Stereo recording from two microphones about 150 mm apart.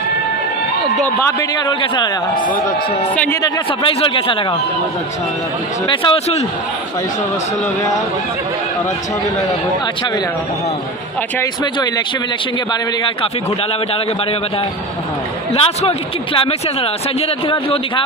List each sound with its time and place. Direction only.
1.7 s speech: 30° left (ahead or behind)
5.9 s speech: 40° left (ahead or behind)
15.5 s speech: 40° left (ahead or behind)